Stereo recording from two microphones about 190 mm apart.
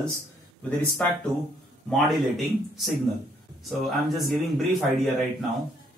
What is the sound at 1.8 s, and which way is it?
Speech, centre (ahead or behind).